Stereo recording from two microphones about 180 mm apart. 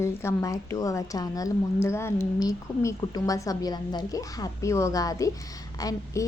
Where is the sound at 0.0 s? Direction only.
15° left (ahead or behind).